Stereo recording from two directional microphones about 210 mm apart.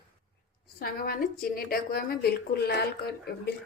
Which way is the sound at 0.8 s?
45° left (ahead or behind).